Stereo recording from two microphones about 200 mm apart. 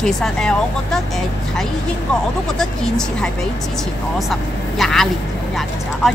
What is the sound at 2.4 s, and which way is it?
Speech, centre (ahead or behind).